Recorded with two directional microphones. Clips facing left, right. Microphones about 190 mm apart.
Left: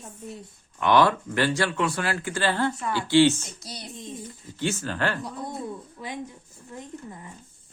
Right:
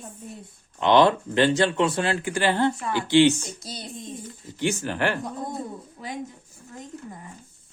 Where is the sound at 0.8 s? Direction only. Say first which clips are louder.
Right 2 dB; 20° right (ahead or behind).